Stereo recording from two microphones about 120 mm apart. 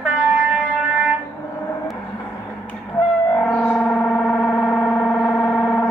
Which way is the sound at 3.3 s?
10° left (ahead or behind).